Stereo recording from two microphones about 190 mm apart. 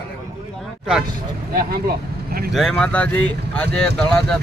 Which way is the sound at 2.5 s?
Centre (ahead or behind).